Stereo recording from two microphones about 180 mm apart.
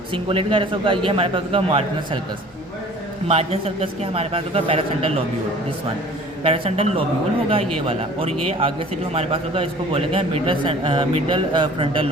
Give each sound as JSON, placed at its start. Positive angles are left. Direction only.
{"t": 0.1, "sound": "a man's voice", "side_deg": -30}
{"t": 3.2, "sound": "a man's voice", "side_deg": -35}
{"t": 6.4, "sound": "a man's voice", "side_deg": -30}